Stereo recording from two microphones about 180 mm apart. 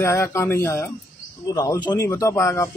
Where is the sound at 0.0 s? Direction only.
15° left (ahead or behind).